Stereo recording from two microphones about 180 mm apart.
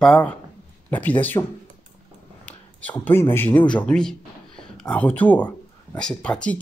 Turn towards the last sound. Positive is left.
turn(degrees=5)  # may be behind; listen again after turning